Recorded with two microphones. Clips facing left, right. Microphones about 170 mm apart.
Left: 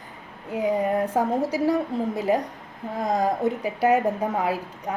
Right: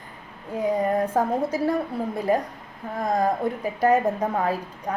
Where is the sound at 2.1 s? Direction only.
20° left (ahead or behind).